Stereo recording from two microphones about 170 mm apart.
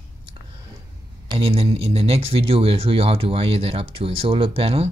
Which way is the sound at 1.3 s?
35° right (ahead or behind).